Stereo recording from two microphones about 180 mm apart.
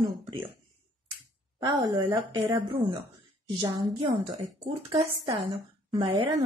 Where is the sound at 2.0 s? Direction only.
20° right (ahead or behind).